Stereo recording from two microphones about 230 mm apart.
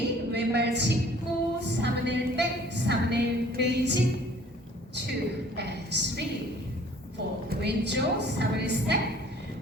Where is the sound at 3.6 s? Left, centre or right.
Right.